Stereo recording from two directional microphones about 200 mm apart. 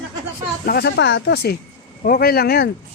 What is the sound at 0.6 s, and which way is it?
A man's voice, 50° left (ahead or behind).